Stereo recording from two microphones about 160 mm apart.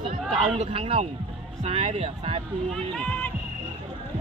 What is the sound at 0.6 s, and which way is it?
Speech, 40° right (ahead or behind).